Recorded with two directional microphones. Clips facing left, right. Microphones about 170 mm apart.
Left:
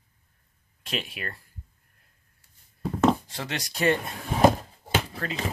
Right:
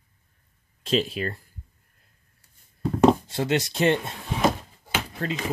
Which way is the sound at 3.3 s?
25° right (ahead or behind).